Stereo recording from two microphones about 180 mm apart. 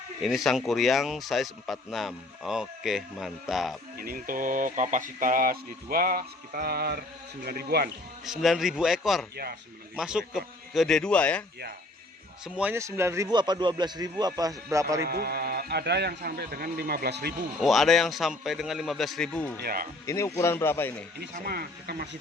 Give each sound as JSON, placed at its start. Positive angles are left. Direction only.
{"t": 0.2, "sound": "speech", "side_deg": 0}
{"t": 3.9, "sound": "speech", "side_deg": -50}
{"t": 8.2, "sound": "speech", "side_deg": 0}
{"t": 9.3, "sound": "speech", "side_deg": -60}
{"t": 9.9, "sound": "speech", "side_deg": -5}
{"t": 12.5, "sound": "speech", "side_deg": -5}
{"t": 15.0, "sound": "speech", "side_deg": -60}
{"t": 17.6, "sound": "speech", "side_deg": 0}
{"t": 19.6, "sound": "speech", "side_deg": -55}
{"t": 20.1, "sound": "speech", "side_deg": 15}
{"t": 21.4, "sound": "speech", "side_deg": -60}